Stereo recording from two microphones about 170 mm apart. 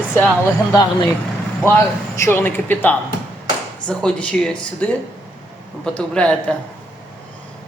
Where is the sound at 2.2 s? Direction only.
15° left (ahead or behind).